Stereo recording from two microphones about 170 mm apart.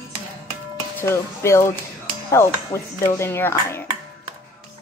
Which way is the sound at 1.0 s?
15° left (ahead or behind).